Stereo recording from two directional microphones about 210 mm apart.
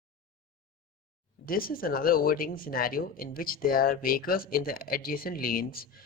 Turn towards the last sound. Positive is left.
turn(degrees=45)  # may be behind; listen again after turning